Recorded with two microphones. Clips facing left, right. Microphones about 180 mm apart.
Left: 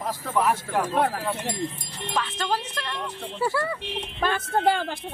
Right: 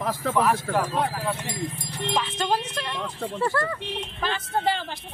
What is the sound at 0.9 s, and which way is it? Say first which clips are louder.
Speech: left 3 dB; 60° left (ahead or behind).